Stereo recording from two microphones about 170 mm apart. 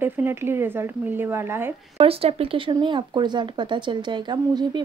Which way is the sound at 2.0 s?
35° right (ahead or behind).